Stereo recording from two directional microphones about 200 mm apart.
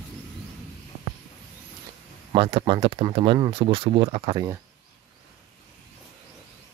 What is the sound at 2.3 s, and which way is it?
Speech, 25° right (ahead or behind).